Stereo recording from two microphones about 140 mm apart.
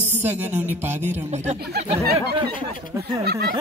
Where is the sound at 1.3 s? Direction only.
55° right (ahead or behind).